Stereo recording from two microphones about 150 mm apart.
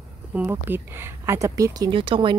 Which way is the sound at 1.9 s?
35° right (ahead or behind).